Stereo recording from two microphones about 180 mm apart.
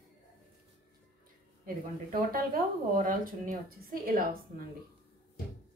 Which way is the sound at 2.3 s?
50° right (ahead or behind).